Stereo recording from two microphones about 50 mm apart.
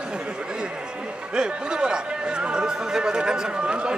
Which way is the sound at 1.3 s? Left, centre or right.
Centre.